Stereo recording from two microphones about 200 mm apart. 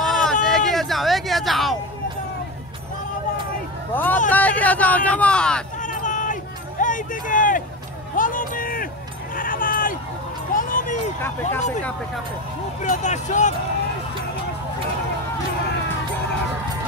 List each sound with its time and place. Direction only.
0.0 s hubbub: centre (ahead or behind)
3.9 s speech: 10° left (ahead or behind)
5.8 s a sound: 40° left (ahead or behind)
6.8 s speech: 40° left (ahead or behind)
8.2 s a sound: 45° left (ahead or behind)
12.8 s speech: 40° left (ahead or behind)